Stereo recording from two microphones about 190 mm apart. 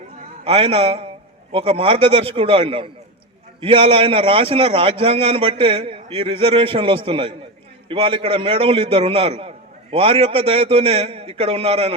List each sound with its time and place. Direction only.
0.4 s a man's voice: 30° right (ahead or behind)